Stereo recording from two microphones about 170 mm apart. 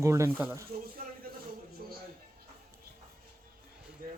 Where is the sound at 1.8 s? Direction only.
60° right (ahead or behind).